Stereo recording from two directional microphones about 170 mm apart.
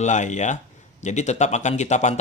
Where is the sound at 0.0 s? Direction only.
45° left (ahead or behind).